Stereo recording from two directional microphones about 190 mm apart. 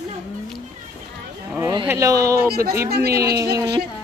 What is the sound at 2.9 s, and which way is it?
Speech, 55° right (ahead or behind).